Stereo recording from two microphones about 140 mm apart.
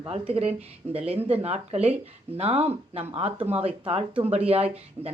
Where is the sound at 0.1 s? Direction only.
45° right (ahead or behind).